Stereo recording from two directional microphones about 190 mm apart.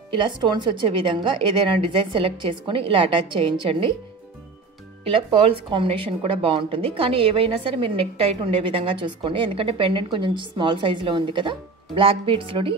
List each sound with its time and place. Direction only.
0.1 s speech: 25° right (ahead or behind)
5.0 s speech: 30° right (ahead or behind)